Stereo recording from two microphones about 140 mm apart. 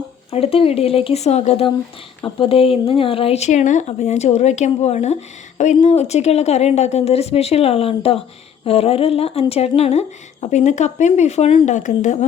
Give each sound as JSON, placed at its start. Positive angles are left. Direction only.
{"t": 0.3, "sound": "speech", "side_deg": 45}